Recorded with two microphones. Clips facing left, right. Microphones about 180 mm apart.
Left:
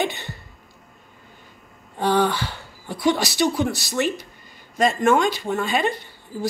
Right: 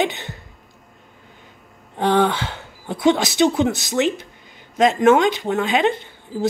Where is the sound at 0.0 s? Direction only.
15° right (ahead or behind).